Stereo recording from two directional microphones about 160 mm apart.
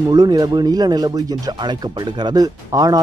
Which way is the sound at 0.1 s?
25° right (ahead or behind).